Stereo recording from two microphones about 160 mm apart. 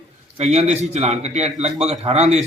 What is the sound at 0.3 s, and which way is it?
A man's voice, 45° right (ahead or behind).